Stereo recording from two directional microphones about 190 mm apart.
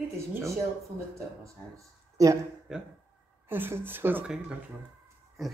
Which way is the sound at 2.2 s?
15° right (ahead or behind).